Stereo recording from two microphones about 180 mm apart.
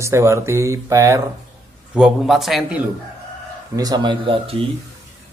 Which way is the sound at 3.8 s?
25° right (ahead or behind).